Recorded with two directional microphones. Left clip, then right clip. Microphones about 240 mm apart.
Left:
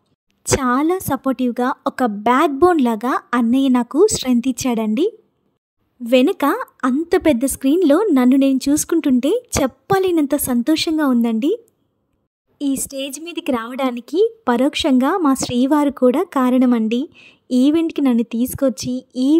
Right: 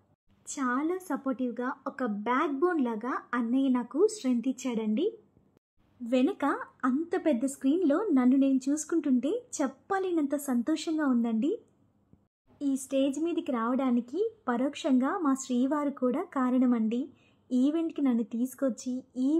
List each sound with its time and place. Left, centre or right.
0.4 s speech: left